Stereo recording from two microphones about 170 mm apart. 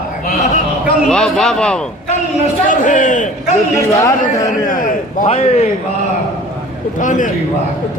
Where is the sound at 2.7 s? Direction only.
50° left (ahead or behind).